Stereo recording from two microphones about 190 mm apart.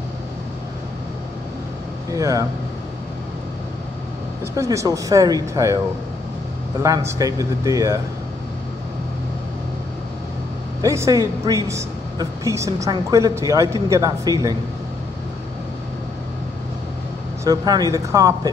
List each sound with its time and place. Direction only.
2.0 s speech: 15° right (ahead or behind)
4.6 s speech: 15° right (ahead or behind)
6.8 s speech: 15° right (ahead or behind)
10.8 s a woman's voice: 15° right (ahead or behind)
17.5 s speech: 20° right (ahead or behind)